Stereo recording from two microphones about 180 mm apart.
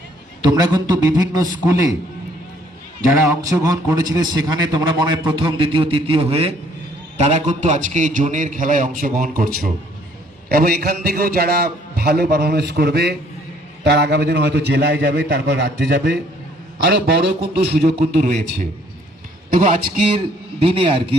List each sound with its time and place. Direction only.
0.4 s a man's voice: 20° right (ahead or behind)
3.6 s a man's voice: 15° right (ahead or behind); by 18.3 s 60° right (ahead or behind)
19.5 s a man's voice: 45° right (ahead or behind); by 21.2 s 30° right (ahead or behind)